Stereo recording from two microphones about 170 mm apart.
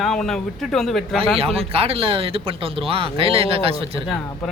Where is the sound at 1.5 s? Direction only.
35° right (ahead or behind).